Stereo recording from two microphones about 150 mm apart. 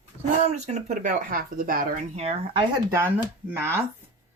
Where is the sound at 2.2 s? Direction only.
45° right (ahead or behind).